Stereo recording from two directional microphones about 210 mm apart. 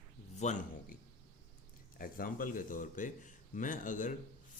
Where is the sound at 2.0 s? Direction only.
40° left (ahead or behind).